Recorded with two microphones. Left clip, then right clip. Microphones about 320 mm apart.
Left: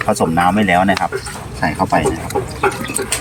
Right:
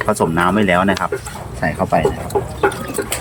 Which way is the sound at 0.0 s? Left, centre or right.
Centre.